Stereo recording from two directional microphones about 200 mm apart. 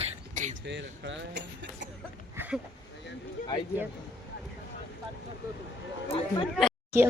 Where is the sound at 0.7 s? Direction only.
60° right (ahead or behind).